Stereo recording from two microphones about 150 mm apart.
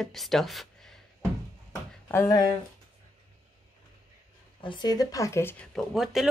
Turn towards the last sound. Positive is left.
turn(degrees=0)  # may be behind; listen again after turning